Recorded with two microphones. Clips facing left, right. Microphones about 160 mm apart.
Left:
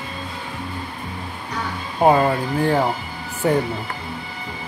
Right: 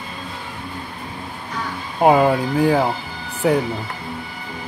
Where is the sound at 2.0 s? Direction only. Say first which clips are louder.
Right 2 dB; 10° right (ahead or behind).